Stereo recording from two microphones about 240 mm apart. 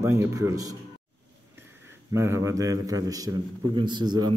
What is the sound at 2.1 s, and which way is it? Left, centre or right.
A man's voice, centre.